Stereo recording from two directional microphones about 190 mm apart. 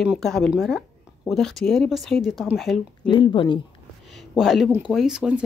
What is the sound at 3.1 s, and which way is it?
Speech, 25° left (ahead or behind).